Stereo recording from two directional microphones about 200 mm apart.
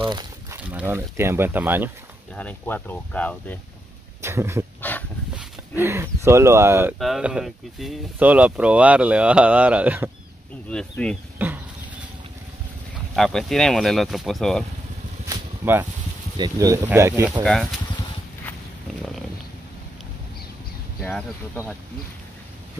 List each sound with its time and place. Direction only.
0.0 s a sound: 20° right (ahead or behind)
0.7 s speech: 10° right (ahead or behind)
2.3 s speech: 10° left (ahead or behind)
4.2 s speech: 15° right (ahead or behind)
4.9 s dog: 10° left (ahead or behind)
5.3 s speech: 10° right (ahead or behind)
10.7 s speech: 5° left (ahead or behind)
11.3 s dog: 10° right (ahead or behind)
13.1 s speech: centre (ahead or behind)
15.2 s a sound: 10° right (ahead or behind)
16.3 s speech: 20° right (ahead or behind)
17.4 s speech: centre (ahead or behind)
21.0 s speech: 5° left (ahead or behind)